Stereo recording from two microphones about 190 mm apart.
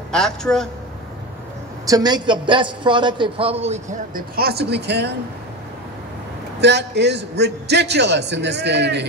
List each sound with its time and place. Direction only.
0.1 s speech: 5° left (ahead or behind)
1.9 s a man's voice: 20° right (ahead or behind); by 5.1 s 60° right (ahead or behind)
6.6 s a man's voice: 65° right (ahead or behind)